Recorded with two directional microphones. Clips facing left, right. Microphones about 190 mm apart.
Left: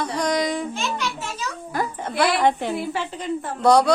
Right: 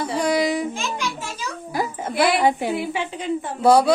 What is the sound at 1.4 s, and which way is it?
A child's voice, 10° right (ahead or behind).